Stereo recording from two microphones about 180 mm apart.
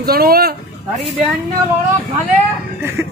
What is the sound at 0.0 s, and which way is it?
Speech, 55° right (ahead or behind).